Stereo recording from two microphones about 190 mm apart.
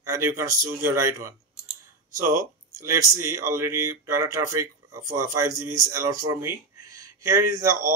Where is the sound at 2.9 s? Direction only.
15° right (ahead or behind).